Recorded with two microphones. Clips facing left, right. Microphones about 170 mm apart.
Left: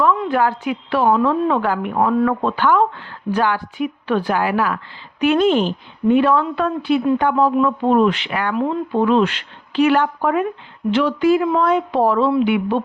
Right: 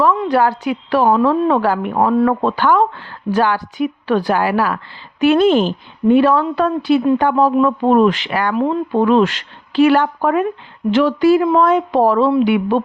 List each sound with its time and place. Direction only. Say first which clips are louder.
0.0 s speech: right 3 dB; 40° right (ahead or behind)